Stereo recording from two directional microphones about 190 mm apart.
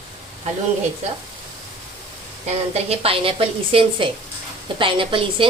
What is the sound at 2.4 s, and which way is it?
A woman's voice, 30° right (ahead or behind).